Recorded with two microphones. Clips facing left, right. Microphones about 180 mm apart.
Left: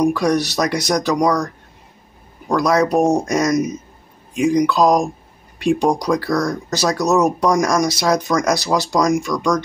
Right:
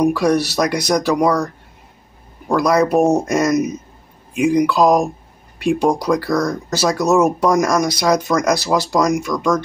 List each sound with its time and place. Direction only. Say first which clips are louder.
0.0 s speech: right 1 dB; 5° right (ahead or behind)